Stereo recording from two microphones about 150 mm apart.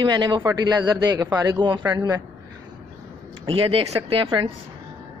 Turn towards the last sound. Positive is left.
turn(degrees=-35)  # may be behind; listen again after turning